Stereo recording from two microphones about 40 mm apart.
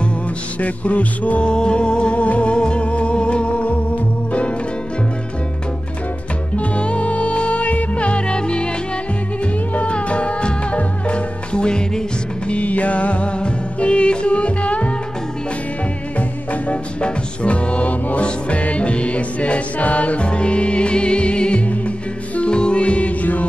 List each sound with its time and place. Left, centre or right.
0.6 s music: left
1.4 s music: left
6.5 s music: left
9.8 s music: left
12.4 s music: left
16.2 s music: left